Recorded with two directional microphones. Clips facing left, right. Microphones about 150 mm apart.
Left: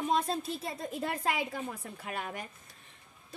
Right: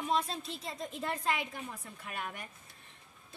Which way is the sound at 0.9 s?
65° left (ahead or behind).